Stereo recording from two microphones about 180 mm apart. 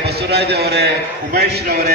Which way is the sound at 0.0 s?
65° right (ahead or behind).